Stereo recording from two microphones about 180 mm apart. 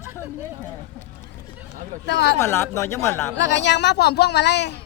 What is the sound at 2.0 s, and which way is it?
Speech, 75° left (ahead or behind).